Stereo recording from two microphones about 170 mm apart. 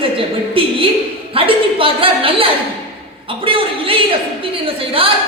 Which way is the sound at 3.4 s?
30° right (ahead or behind).